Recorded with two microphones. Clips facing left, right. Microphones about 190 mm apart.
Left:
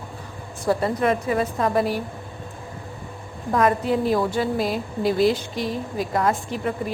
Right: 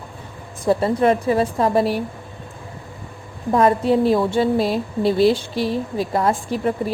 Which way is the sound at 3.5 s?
30° right (ahead or behind).